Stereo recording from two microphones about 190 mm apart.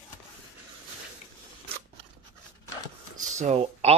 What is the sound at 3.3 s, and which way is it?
Speech, 35° right (ahead or behind).